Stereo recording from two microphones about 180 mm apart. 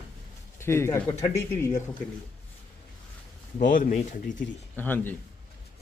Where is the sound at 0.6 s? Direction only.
15° left (ahead or behind).